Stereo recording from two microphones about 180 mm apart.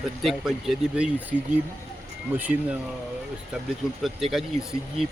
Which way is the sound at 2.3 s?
10° right (ahead or behind).